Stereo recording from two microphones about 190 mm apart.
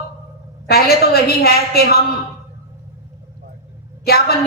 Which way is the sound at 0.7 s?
55° left (ahead or behind).